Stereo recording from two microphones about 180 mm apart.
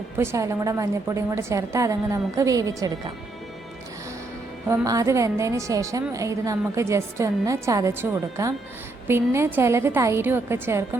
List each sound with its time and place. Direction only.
0.2 s a woman's voice: 15° right (ahead or behind)
4.7 s a woman's voice: 15° right (ahead or behind)